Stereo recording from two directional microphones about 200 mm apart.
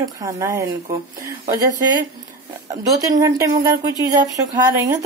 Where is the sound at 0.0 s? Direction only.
15° right (ahead or behind).